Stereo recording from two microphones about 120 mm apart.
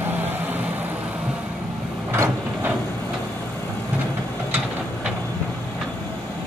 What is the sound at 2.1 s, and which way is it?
Vehicle, 15° right (ahead or behind).